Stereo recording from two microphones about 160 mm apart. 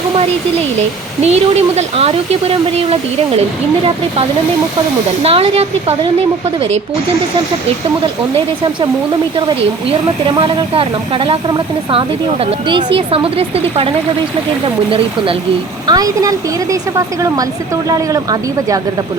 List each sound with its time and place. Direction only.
1.2 s a woman's voice: 45° right (ahead or behind)
5.2 s a woman's voice: 40° right (ahead or behind)
10.2 s a woman's voice: 30° right (ahead or behind)
15.9 s speech: 20° right (ahead or behind)